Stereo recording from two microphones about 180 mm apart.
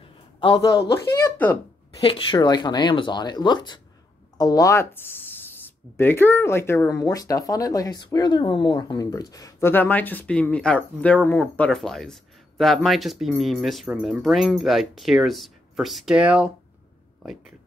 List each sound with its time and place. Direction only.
0.4 s speech: 25° left (ahead or behind)
2.0 s speech: 30° left (ahead or behind); by 16.5 s 5° right (ahead or behind)